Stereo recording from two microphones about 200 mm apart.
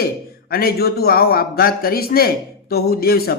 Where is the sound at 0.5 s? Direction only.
50° left (ahead or behind).